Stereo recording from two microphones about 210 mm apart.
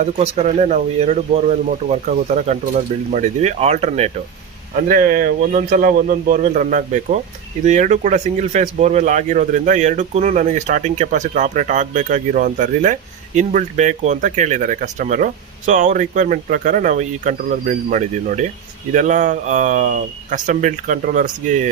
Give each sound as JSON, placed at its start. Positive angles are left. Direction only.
{"t": 0.0, "sound": "speech", "side_deg": -35}